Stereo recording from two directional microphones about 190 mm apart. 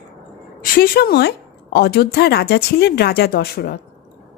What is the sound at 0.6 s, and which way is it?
A woman's voice, 50° left (ahead or behind).